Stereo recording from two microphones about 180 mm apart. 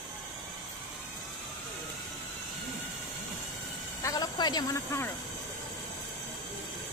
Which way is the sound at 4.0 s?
20° left (ahead or behind).